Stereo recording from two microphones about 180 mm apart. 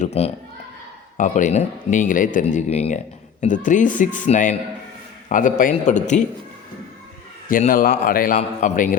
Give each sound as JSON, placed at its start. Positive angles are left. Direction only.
{"t": 0.0, "sound": "a man's voice", "side_deg": 35}
{"t": 7.4, "sound": "speech", "side_deg": 50}